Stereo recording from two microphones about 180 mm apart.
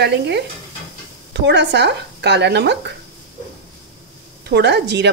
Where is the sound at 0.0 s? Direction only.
70° right (ahead or behind).